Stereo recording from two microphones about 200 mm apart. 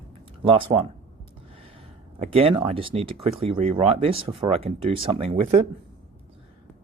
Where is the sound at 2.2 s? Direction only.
30° right (ahead or behind).